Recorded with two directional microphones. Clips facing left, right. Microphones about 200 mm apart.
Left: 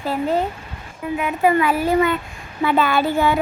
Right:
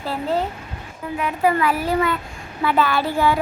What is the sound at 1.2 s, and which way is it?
A child's voice, 20° left (ahead or behind).